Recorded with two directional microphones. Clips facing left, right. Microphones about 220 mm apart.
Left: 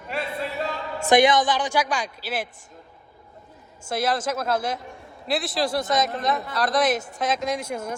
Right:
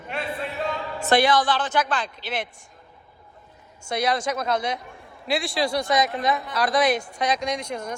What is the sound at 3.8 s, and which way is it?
A man's voice, 5° left (ahead or behind).